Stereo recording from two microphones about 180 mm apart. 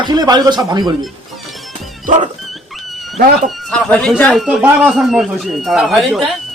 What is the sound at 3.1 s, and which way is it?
Speech, 45° right (ahead or behind).